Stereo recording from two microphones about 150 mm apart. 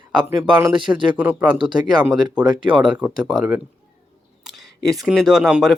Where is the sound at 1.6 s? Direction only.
30° right (ahead or behind).